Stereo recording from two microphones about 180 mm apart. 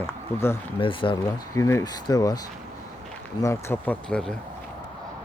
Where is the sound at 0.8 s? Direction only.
30° left (ahead or behind).